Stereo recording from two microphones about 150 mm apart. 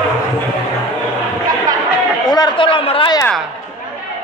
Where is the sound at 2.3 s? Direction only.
30° left (ahead or behind).